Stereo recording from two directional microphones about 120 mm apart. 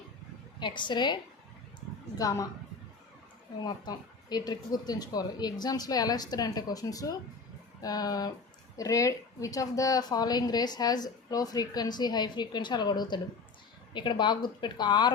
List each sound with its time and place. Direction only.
0.6 s a woman's voice: 40° left (ahead or behind)
2.1 s a woman's voice: 30° left (ahead or behind)
3.6 s a woman's voice: 35° left (ahead or behind)